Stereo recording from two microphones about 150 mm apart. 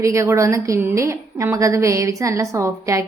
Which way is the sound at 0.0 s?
20° right (ahead or behind).